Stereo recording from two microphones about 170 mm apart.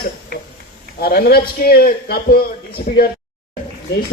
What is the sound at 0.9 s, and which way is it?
A man's voice, 65° left (ahead or behind).